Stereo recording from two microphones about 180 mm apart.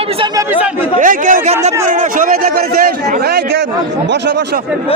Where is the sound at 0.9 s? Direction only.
45° right (ahead or behind).